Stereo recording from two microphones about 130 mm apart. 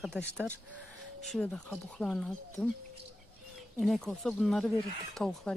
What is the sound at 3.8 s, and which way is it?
Speech, centre (ahead or behind).